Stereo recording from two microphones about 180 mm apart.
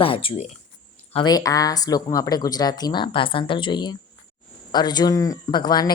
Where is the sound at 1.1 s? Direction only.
20° left (ahead or behind).